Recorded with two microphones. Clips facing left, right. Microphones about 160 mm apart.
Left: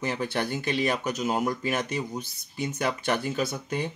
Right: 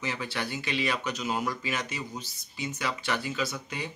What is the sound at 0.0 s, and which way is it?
Speech, 50° left (ahead or behind).